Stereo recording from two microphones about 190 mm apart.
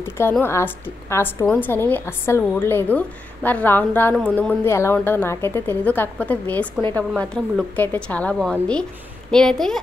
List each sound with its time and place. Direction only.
0.0 s a woman's voice: 10° left (ahead or behind)